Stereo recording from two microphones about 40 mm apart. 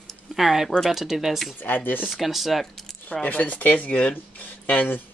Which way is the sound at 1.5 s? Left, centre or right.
Left.